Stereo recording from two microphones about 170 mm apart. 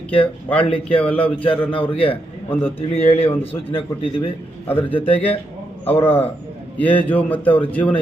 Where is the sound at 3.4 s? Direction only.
30° left (ahead or behind).